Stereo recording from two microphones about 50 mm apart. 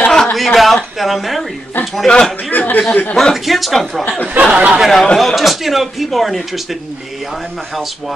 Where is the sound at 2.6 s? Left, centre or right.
Left.